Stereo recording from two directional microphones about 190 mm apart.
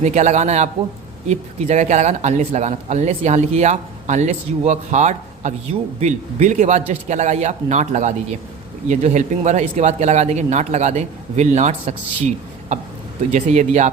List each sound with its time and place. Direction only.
0.0 s speech: 35° right (ahead or behind)
13.3 s speech: 40° right (ahead or behind)